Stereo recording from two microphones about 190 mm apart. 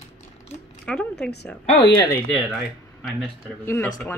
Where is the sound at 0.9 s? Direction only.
5° left (ahead or behind).